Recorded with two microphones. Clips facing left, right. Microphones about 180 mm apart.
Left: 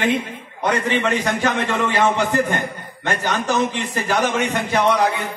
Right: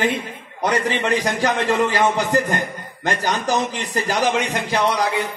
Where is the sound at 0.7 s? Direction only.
35° right (ahead or behind).